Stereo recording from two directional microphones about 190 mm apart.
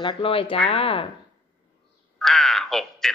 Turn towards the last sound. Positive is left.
turn(degrees=0)  # may be behind; listen again after turning